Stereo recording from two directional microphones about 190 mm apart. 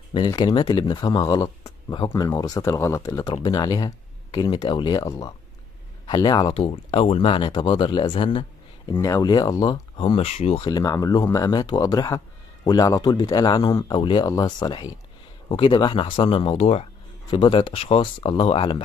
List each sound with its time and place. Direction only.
0.1 s speech: 20° left (ahead or behind)